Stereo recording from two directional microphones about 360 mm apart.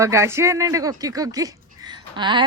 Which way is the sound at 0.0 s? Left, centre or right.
Centre.